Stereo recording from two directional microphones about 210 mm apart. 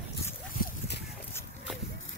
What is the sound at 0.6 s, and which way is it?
Clip-clop, 50° left (ahead or behind).